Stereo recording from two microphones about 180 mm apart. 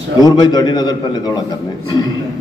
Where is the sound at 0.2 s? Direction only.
25° left (ahead or behind).